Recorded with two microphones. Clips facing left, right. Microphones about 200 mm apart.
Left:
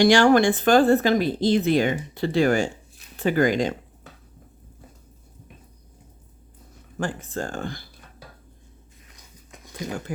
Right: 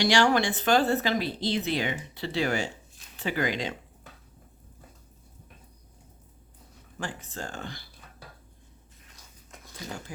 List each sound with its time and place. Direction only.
0.0 s speech: 50° left (ahead or behind)
7.0 s speech: 50° left (ahead or behind)
9.1 s a sound: 15° left (ahead or behind)